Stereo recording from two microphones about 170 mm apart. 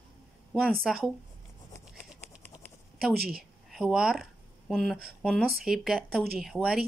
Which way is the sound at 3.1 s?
70° right (ahead or behind).